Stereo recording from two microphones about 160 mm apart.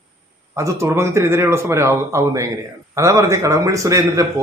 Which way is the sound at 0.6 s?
20° right (ahead or behind).